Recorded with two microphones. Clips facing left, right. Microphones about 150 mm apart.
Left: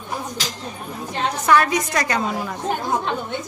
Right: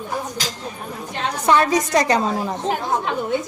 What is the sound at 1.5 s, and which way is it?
A woman's voice, 25° right (ahead or behind).